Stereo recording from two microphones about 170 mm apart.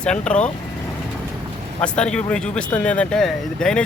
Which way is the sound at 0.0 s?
5° left (ahead or behind).